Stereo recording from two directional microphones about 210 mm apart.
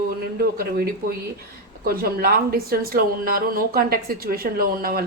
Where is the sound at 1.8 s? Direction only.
45° right (ahead or behind).